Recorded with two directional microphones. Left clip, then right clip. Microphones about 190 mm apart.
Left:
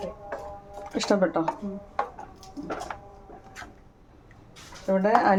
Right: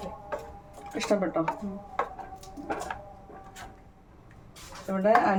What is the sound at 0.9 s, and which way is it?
Speech, 45° left (ahead or behind).